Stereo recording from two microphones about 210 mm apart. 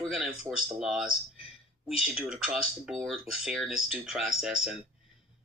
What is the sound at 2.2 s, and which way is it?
Speech, 5° right (ahead or behind).